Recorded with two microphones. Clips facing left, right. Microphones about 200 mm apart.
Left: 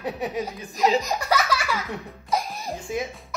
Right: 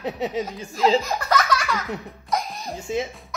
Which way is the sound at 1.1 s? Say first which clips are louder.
Right 1 dB; 10° left (ahead or behind).